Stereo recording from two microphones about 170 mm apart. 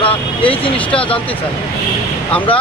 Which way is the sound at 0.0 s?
30° left (ahead or behind).